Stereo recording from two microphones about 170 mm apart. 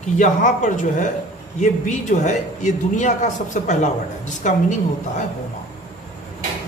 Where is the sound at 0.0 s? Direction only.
45° left (ahead or behind).